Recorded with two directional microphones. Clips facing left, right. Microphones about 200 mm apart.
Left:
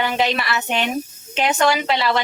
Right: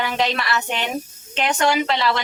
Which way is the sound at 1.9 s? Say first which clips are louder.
Left 1 dB; 5° left (ahead or behind).